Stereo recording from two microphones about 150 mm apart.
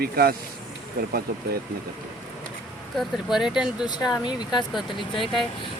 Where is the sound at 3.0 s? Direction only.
5° right (ahead or behind).